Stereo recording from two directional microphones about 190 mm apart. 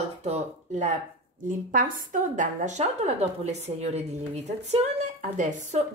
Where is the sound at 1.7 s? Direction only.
45° right (ahead or behind).